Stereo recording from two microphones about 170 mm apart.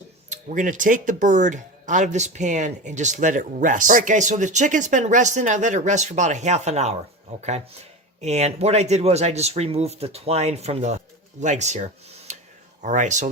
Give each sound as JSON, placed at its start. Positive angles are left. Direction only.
{"t": 0.3, "sound": "speech", "side_deg": -50}
{"t": 8.2, "sound": "speech", "side_deg": -40}